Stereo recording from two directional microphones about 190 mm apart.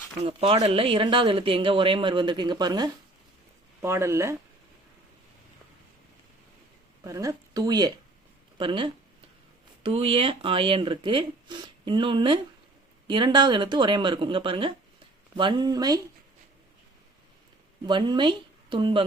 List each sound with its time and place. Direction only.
0.3 s speech: 30° right (ahead or behind)
7.0 s speech: 15° right (ahead or behind)
17.8 s speech: 25° right (ahead or behind)